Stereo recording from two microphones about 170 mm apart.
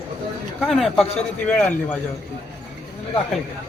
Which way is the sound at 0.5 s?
Centre (ahead or behind).